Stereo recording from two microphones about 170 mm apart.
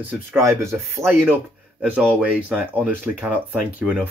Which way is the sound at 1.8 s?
5° right (ahead or behind).